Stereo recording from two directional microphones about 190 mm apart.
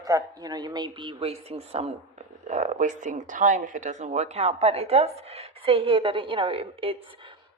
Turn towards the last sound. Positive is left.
turn(degrees=-25)  # may be behind; listen again after turning